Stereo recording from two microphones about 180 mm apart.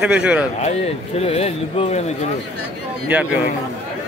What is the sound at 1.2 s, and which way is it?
Speech, 35° left (ahead or behind).